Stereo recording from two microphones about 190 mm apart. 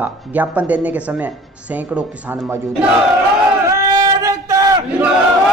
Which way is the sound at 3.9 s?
15° right (ahead or behind).